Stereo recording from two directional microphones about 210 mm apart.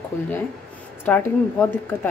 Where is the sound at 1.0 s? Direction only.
5° left (ahead or behind).